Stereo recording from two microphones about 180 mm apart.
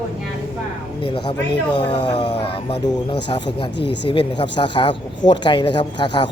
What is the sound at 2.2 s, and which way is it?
Speech, 30° left (ahead or behind).